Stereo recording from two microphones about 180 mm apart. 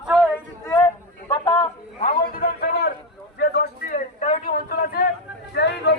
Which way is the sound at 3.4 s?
60° left (ahead or behind).